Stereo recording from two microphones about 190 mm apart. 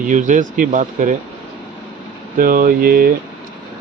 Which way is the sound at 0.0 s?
40° right (ahead or behind).